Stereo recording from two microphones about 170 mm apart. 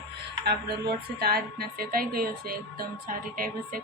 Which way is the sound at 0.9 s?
65° right (ahead or behind).